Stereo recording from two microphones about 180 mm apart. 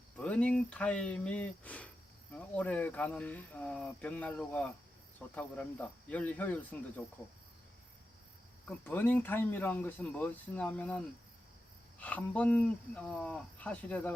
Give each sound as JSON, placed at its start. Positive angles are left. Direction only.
{"t": 0.2, "sound": "speech", "side_deg": 5}
{"t": 8.6, "sound": "speech", "side_deg": 10}